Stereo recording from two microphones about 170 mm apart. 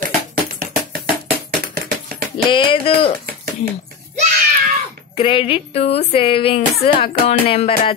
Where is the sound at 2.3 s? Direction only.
30° left (ahead or behind).